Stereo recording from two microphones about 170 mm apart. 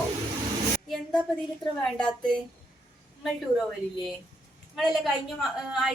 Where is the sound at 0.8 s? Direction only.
5° left (ahead or behind).